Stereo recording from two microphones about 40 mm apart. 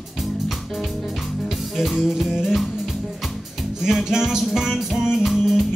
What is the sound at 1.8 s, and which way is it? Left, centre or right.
Music, centre.